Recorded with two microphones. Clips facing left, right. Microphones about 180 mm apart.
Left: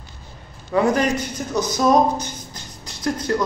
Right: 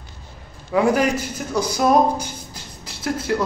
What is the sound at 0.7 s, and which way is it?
A man's voice, 5° right (ahead or behind).